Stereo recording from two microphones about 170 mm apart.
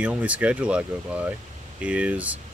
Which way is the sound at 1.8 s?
5° right (ahead or behind).